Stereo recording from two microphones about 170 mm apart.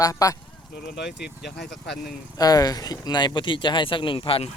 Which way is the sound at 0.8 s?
75° left (ahead or behind).